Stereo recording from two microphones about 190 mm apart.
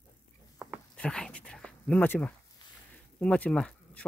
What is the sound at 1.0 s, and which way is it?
Speech, 5° left (ahead or behind).